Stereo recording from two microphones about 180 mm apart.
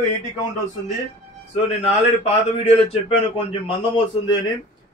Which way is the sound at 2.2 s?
35° left (ahead or behind).